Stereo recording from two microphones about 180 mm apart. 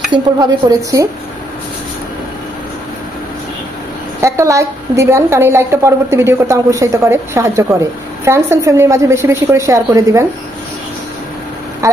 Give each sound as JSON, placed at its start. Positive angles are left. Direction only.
{"t": 0.1, "sound": "stir", "side_deg": -20}
{"t": 4.2, "sound": "a woman's voice", "side_deg": -15}
{"t": 11.8, "sound": "speech", "side_deg": -15}